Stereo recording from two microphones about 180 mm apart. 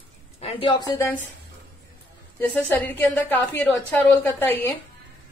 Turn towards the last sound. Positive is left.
turn(degrees=10)  # may be behind; listen again after turning